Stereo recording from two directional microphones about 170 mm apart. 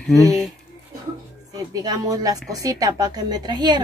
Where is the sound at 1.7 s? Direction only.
20° right (ahead or behind).